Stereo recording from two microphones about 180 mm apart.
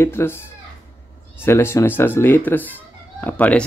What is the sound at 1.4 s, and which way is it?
Speech, 15° left (ahead or behind).